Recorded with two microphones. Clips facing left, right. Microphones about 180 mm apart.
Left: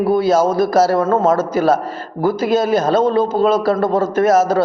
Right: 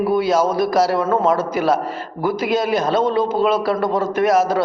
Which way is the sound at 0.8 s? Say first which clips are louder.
Left 3 dB; 45° left (ahead or behind).